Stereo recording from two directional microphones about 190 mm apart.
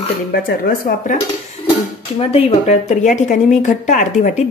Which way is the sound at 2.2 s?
30° left (ahead or behind).